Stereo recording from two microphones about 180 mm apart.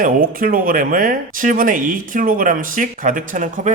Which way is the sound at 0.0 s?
50° right (ahead or behind).